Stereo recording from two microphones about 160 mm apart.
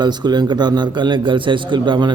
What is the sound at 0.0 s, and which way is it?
A man's voice, 25° right (ahead or behind).